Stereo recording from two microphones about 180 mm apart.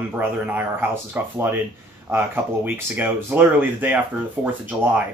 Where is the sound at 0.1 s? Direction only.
10° right (ahead or behind).